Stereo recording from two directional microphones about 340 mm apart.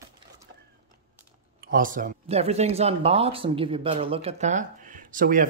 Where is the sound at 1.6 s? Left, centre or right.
Right.